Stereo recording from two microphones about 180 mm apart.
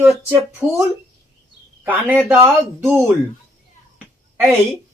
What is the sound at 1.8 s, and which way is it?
Speech, 10° right (ahead or behind).